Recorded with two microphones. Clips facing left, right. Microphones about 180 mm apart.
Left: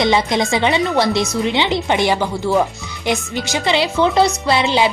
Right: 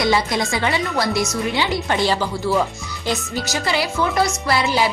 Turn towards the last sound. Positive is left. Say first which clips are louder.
# left 3 dB
turn(degrees=20)  # may be behind; listen again after turning